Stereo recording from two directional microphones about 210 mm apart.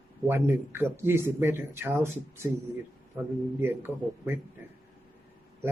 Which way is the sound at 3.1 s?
10° right (ahead or behind).